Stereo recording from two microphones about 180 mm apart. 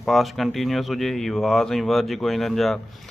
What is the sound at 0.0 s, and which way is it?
Speech, centre (ahead or behind).